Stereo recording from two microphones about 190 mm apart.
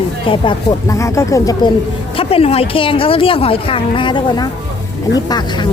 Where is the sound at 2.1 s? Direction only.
30° left (ahead or behind).